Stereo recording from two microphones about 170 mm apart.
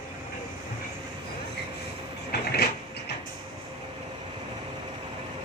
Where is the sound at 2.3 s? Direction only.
65° left (ahead or behind).